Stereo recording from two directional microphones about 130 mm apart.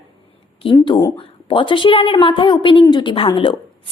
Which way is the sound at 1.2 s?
40° left (ahead or behind).